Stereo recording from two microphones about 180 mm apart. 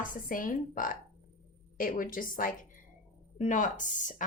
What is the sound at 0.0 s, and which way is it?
A woman's voice, 50° left (ahead or behind).